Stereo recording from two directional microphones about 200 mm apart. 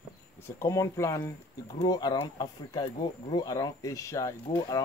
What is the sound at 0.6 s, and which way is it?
Speech, 15° left (ahead or behind).